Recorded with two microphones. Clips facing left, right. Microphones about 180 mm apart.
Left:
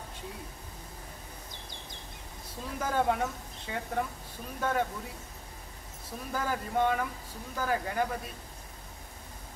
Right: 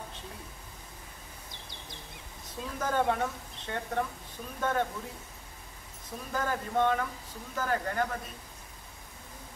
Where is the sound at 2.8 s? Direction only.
5° left (ahead or behind).